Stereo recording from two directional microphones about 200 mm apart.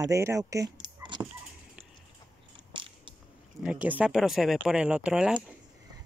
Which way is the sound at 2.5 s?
25° right (ahead or behind).